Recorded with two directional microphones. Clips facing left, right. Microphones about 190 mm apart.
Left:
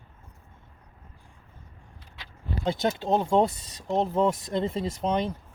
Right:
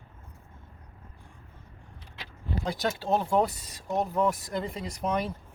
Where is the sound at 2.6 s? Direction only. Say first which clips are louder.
Left 4 dB; 25° left (ahead or behind).